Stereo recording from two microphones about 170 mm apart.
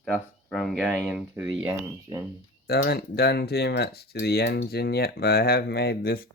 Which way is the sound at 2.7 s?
65° left (ahead or behind).